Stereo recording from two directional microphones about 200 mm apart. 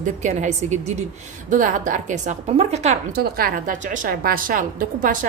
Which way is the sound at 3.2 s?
50° right (ahead or behind).